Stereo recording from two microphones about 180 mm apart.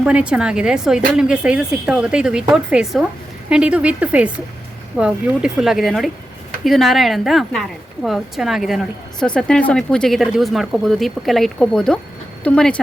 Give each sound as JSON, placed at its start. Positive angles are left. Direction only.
{"t": 0.0, "sound": "a woman's voice", "side_deg": -5}